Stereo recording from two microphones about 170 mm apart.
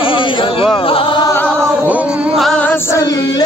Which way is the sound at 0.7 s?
30° left (ahead or behind).